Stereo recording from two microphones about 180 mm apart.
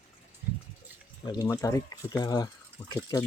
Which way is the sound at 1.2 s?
25° left (ahead or behind).